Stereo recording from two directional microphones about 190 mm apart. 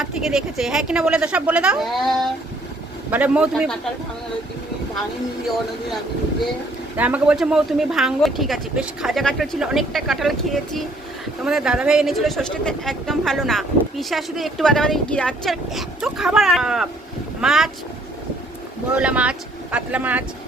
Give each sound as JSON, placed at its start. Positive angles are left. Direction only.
{"t": 0.0, "sound": "speech", "side_deg": -5}
{"t": 6.9, "sound": "speech", "side_deg": -10}
{"t": 18.9, "sound": "speech", "side_deg": -5}